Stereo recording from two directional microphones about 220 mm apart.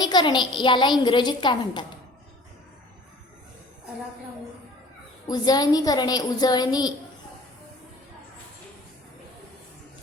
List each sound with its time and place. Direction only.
0.0 s a woman's voice: 20° left (ahead or behind)
5.3 s a child's voice: 15° left (ahead or behind)